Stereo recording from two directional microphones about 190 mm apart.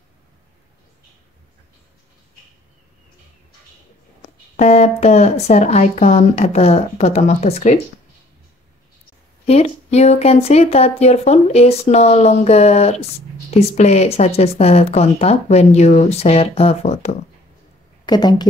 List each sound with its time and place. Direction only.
4.6 s speech: 35° left (ahead or behind)
9.5 s speech: 35° left (ahead or behind)
18.0 s speech: 20° left (ahead or behind)